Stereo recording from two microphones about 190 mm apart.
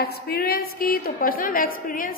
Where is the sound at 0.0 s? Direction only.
55° left (ahead or behind).